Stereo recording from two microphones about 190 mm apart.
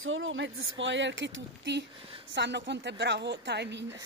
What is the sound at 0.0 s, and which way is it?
Speech, 90° right.